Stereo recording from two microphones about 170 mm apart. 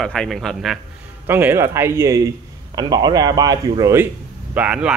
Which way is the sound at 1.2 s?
10° right (ahead or behind).